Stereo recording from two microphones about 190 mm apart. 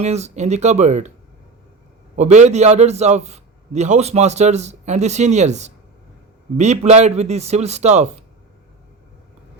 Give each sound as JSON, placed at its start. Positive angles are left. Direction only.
{"t": 0.0, "sound": "a man's voice", "side_deg": -35}
{"t": 2.1, "sound": "a man's voice", "side_deg": -40}